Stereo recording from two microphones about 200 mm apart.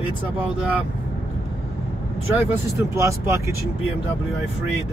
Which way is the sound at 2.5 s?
15° right (ahead or behind).